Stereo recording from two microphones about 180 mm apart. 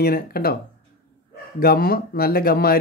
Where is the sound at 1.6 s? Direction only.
55° left (ahead or behind).